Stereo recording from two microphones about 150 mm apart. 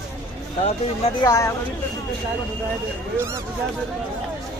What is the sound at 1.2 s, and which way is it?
Speech, 20° left (ahead or behind).